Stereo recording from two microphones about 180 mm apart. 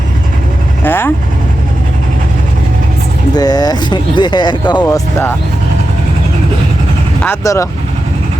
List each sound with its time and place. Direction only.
0.9 s speech: 10° left (ahead or behind)
3.3 s speech: 20° left (ahead or behind)
7.2 s speech: 15° left (ahead or behind)